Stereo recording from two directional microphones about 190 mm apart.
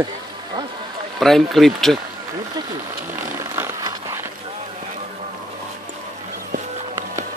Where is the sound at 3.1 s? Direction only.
15° right (ahead or behind).